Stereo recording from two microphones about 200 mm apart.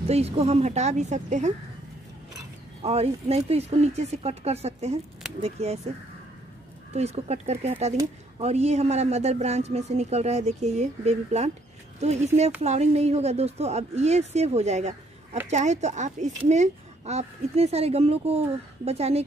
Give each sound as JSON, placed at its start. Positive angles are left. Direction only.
{"t": 0.1, "sound": "a woman's voice", "side_deg": -30}
{"t": 2.8, "sound": "a woman's voice", "side_deg": -30}
{"t": 6.9, "sound": "a woman's voice", "side_deg": -35}
{"t": 12.6, "sound": "a woman's voice", "side_deg": -35}